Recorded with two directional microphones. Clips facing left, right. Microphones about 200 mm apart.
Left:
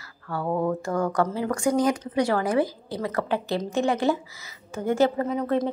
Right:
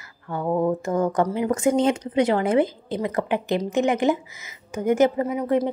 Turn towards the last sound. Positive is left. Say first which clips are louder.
# right 2 dB
turn(degrees=-15)  # may be behind; listen again after turning